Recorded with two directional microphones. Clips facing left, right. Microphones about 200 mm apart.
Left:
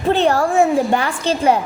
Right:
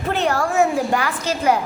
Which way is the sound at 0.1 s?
30° left (ahead or behind).